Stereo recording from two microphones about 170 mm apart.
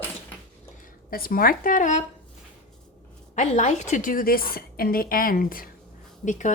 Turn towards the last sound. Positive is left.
turn(degrees=45)  # may be behind; listen again after turning